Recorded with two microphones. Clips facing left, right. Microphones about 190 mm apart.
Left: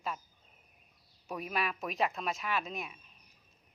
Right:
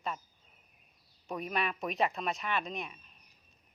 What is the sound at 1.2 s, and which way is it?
Speech, 5° left (ahead or behind).